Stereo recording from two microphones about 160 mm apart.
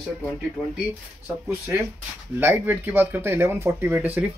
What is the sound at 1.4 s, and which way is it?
Speech, 15° right (ahead or behind).